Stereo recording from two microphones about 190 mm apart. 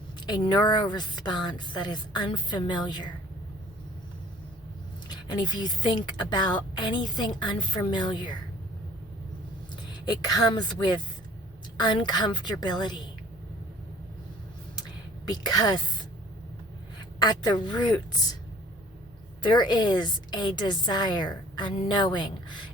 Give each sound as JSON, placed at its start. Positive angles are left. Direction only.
{"t": 0.3, "sound": "a woman's voice", "side_deg": 20}
{"t": 5.0, "sound": "a woman's voice", "side_deg": 20}
{"t": 10.1, "sound": "a woman's voice", "side_deg": 20}
{"t": 15.4, "sound": "a woman's voice", "side_deg": 20}
{"t": 17.2, "sound": "a woman's voice", "side_deg": 20}
{"t": 19.4, "sound": "a woman's voice", "side_deg": 25}